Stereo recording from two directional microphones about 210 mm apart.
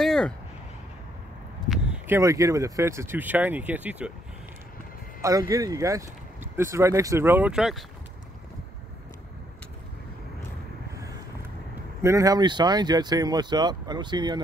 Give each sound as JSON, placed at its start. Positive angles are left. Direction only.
{"t": 0.0, "sound": "a sound", "side_deg": 0}
{"t": 1.7, "sound": "speech", "side_deg": -5}
{"t": 5.2, "sound": "speech", "side_deg": -15}
{"t": 12.0, "sound": "speech", "side_deg": -15}